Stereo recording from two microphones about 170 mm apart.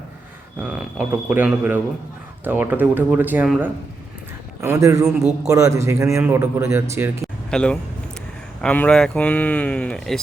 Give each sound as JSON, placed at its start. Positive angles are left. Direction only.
{"t": 0.6, "sound": "speech", "side_deg": -5}
{"t": 7.5, "sound": "speech", "side_deg": 5}